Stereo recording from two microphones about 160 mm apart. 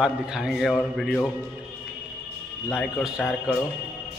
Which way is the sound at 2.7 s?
5° right (ahead or behind).